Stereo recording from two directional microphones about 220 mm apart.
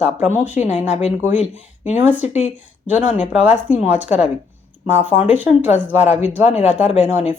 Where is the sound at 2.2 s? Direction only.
30° left (ahead or behind).